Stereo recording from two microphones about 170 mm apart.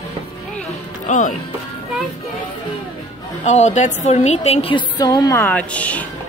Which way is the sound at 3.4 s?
45° left (ahead or behind).